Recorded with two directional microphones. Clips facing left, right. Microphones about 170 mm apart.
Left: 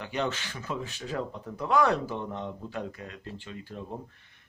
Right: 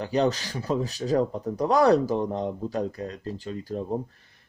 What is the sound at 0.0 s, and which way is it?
Speech, 35° right (ahead or behind).